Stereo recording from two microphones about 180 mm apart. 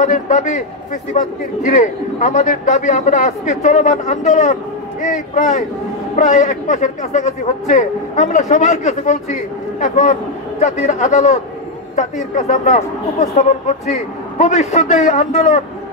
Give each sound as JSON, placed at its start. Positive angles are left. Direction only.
{"t": 0.0, "sound": "a man's voice", "side_deg": 40}